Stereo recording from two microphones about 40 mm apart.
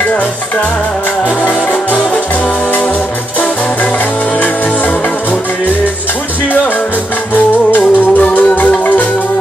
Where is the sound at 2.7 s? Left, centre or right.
Left.